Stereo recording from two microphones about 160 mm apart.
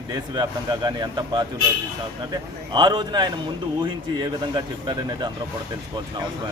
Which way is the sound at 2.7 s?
30° right (ahead or behind).